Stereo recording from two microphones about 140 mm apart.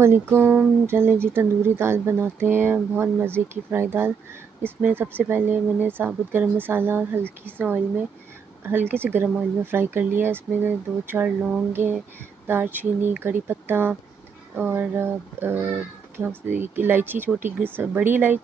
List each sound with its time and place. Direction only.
0.0 s speech: 20° right (ahead or behind)